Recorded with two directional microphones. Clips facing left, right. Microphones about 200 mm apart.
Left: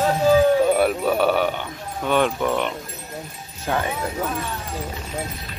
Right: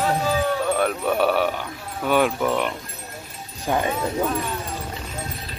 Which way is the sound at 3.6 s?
15° right (ahead or behind).